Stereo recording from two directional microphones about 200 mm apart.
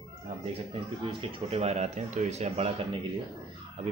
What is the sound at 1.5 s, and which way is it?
A man's voice, 30° right (ahead or behind).